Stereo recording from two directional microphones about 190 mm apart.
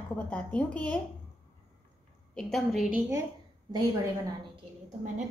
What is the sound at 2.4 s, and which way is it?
Speech, centre (ahead or behind).